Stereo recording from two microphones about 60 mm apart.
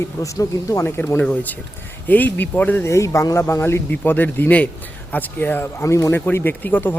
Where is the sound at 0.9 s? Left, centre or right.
Left.